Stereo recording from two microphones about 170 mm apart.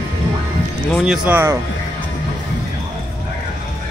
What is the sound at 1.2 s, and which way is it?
Speech, 15° right (ahead or behind).